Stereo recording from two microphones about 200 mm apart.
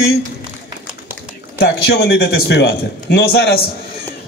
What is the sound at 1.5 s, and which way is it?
A man's voice, 55° left (ahead or behind).